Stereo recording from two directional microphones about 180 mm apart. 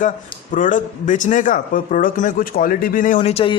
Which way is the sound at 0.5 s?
45° left (ahead or behind).